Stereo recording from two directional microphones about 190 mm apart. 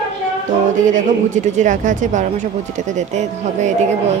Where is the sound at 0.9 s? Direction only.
40° right (ahead or behind).